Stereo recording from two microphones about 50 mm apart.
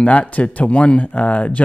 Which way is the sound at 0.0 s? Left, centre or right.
Left.